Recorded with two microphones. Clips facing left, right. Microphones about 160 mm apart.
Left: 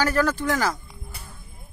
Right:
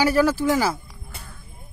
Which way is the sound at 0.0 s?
10° right (ahead or behind).